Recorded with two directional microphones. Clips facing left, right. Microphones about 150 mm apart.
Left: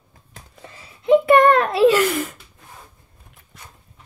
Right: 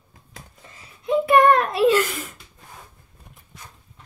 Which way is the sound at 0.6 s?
70° left (ahead or behind).